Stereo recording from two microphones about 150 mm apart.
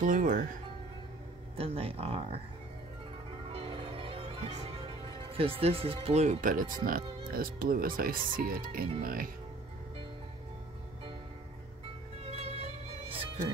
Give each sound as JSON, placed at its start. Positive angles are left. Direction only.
{"t": 0.0, "sound": "speech", "side_deg": -55}
{"t": 1.6, "sound": "speech", "side_deg": -40}
{"t": 3.4, "sound": "music", "side_deg": -35}
{"t": 6.9, "sound": "speech", "side_deg": -75}
{"t": 12.2, "sound": "music", "side_deg": -40}